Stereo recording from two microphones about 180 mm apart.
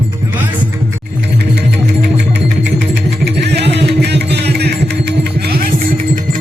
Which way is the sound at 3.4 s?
70° right (ahead or behind).